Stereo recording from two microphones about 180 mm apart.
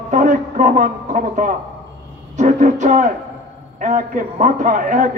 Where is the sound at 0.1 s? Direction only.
45° right (ahead or behind).